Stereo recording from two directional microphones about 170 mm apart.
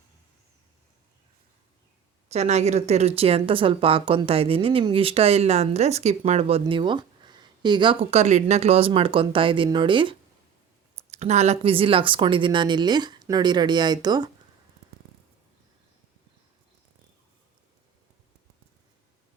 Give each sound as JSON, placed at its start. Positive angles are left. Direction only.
{"t": 2.3, "sound": "speech", "side_deg": -40}
{"t": 11.1, "sound": "speech", "side_deg": -40}